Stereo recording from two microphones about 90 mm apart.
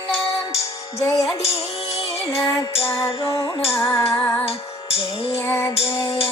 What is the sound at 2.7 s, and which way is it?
Music, 80° left.